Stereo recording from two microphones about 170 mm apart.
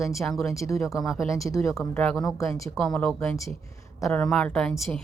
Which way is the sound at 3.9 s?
20° left (ahead or behind).